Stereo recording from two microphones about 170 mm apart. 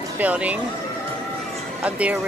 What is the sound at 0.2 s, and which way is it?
Speech, 10° right (ahead or behind).